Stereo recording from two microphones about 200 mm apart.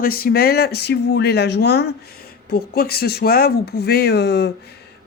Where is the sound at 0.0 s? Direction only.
50° left (ahead or behind).